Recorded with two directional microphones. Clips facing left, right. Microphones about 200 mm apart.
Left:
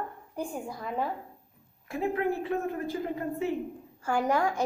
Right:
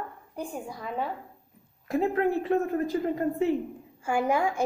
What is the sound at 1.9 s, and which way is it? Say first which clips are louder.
A woman's voice: right 4 dB; 40° right (ahead or behind).